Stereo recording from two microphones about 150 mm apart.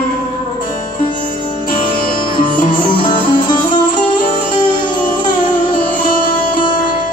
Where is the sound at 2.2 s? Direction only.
30° left (ahead or behind).